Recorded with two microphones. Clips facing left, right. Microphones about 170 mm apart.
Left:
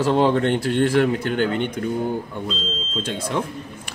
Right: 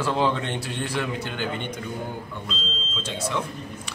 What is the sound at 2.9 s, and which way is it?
A man's voice, 50° left (ahead or behind).